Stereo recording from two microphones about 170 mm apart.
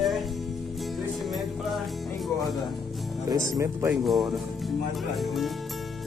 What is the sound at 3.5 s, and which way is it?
Speech, 15° right (ahead or behind).